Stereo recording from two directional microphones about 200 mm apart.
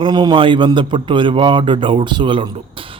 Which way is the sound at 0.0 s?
20° right (ahead or behind).